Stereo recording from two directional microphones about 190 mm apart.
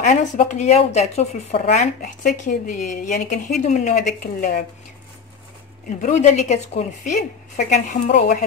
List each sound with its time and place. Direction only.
0.0 s speech: 40° left (ahead or behind)
5.9 s speech: 40° left (ahead or behind)